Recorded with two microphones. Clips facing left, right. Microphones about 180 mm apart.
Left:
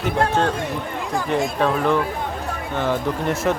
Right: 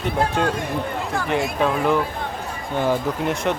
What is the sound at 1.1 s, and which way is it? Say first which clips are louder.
Speech: left 3 dB; centre (ahead or behind).